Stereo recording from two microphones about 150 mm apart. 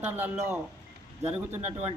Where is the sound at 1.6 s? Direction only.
45° right (ahead or behind).